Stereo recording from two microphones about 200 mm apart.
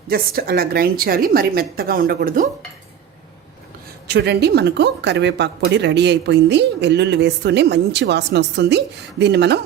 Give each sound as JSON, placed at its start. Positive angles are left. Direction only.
{"t": 0.1, "sound": "a woman's voice", "side_deg": -50}
{"t": 4.0, "sound": "speech", "side_deg": -55}